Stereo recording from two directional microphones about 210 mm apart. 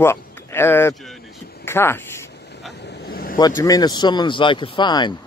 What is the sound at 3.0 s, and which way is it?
Vehicle, 45° left (ahead or behind).